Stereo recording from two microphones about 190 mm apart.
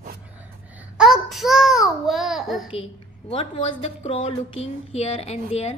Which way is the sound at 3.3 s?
30° left (ahead or behind).